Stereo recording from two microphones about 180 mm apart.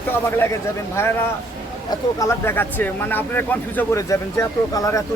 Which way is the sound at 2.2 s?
15° left (ahead or behind).